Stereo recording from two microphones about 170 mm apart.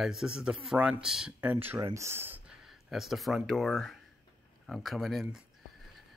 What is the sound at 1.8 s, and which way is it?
Speech, 20° right (ahead or behind).